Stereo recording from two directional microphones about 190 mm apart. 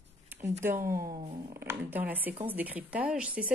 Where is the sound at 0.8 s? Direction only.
50° right (ahead or behind).